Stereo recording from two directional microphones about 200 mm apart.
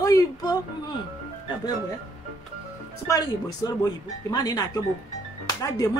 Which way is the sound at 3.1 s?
20° left (ahead or behind).